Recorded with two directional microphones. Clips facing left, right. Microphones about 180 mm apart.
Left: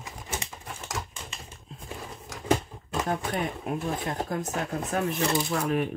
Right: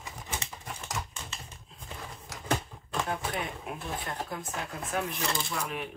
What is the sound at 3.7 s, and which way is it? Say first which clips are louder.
Speech: left 7 dB; 45° left (ahead or behind).